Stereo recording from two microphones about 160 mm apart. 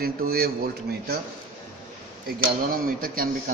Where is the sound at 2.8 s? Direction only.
65° right (ahead or behind).